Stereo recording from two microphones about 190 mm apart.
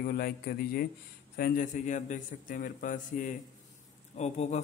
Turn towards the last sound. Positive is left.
turn(degrees=35)  # may be behind; listen again after turning